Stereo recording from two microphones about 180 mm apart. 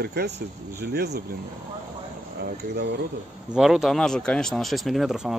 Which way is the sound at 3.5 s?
5° right (ahead or behind).